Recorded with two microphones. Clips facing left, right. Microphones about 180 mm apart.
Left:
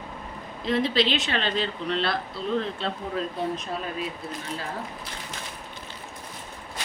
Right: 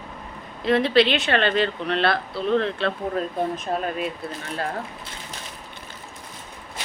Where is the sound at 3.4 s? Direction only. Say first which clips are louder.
Right 4 dB; 50° right (ahead or behind).